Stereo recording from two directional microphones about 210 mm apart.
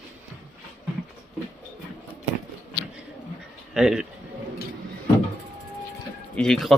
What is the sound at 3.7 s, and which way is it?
Speech, centre (ahead or behind).